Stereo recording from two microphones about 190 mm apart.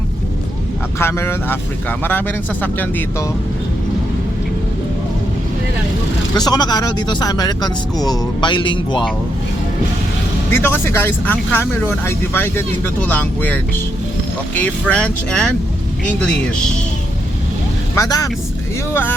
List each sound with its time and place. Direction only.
0.9 s speech: 15° left (ahead or behind)
6.3 s speech: 20° left (ahead or behind)
10.5 s speech: 10° left (ahead or behind)
17.9 s speech: 20° left (ahead or behind)